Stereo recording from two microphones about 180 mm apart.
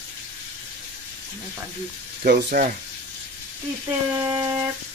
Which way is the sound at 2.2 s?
55° right (ahead or behind).